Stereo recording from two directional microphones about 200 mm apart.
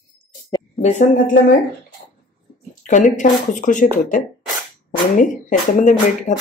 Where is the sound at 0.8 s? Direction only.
40° left (ahead or behind).